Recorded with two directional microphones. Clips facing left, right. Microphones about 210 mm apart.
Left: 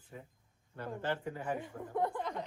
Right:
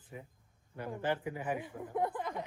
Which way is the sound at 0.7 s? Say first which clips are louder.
Right 2 dB; 15° right (ahead or behind).